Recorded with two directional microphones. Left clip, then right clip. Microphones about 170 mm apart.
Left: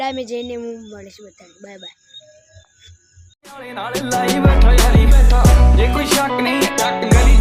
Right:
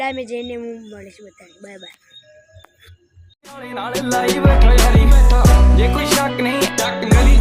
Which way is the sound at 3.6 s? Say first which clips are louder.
Even; centre (ahead or behind).